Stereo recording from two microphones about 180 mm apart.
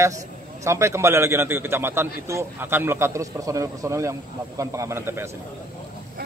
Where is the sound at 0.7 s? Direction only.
15° right (ahead or behind).